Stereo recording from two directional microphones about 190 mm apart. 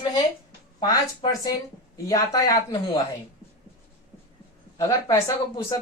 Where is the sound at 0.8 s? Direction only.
20° left (ahead or behind).